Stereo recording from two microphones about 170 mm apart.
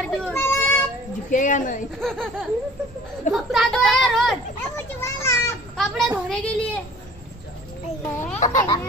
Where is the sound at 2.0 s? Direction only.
5° left (ahead or behind).